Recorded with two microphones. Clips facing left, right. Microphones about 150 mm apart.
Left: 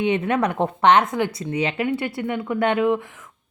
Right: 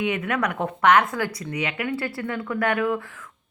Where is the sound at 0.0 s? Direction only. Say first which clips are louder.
Left 4 dB; 30° left (ahead or behind).